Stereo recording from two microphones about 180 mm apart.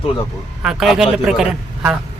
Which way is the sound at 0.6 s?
5° right (ahead or behind).